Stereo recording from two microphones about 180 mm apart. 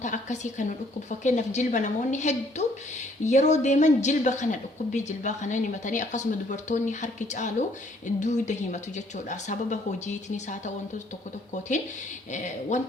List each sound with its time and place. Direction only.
0.0 s a woman's voice: 45° left (ahead or behind)
12.3 s speech: 40° left (ahead or behind)